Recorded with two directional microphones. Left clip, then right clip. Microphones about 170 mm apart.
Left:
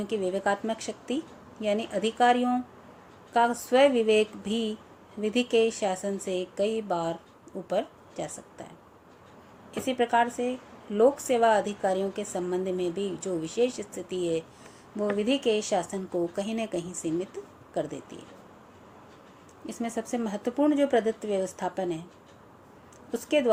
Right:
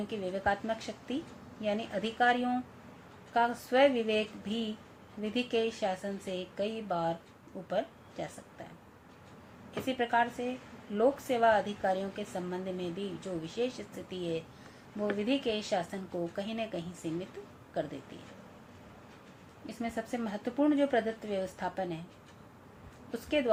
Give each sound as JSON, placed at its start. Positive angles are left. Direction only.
{"t": 0.1, "sound": "a woman's voice", "side_deg": 55}
{"t": 9.8, "sound": "a woman's voice", "side_deg": 55}
{"t": 19.6, "sound": "a woman's voice", "side_deg": 50}
{"t": 23.1, "sound": "a woman's voice", "side_deg": 55}